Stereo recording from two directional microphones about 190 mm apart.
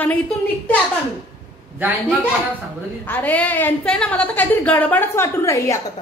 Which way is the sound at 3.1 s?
10° left (ahead or behind).